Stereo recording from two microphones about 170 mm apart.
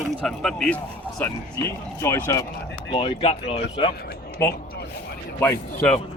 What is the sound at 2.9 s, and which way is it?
Speech, 30° left (ahead or behind).